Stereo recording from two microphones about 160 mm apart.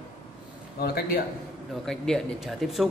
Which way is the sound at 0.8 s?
70° left (ahead or behind).